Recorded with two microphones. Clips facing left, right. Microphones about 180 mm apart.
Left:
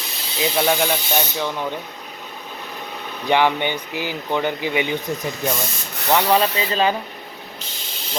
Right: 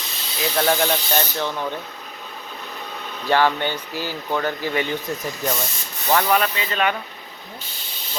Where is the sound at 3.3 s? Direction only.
15° left (ahead or behind).